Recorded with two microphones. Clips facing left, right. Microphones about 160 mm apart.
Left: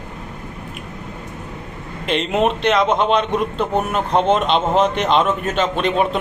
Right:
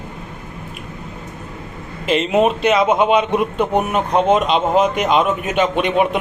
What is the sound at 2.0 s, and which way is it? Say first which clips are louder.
A man's voice: right 3 dB; centre (ahead or behind).